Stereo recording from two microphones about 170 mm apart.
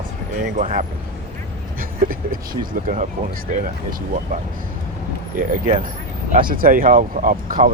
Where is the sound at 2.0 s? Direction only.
55° right (ahead or behind).